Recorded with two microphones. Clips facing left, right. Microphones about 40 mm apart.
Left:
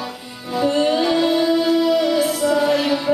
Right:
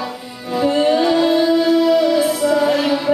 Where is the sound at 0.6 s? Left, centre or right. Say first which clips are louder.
Right 3 dB; centre.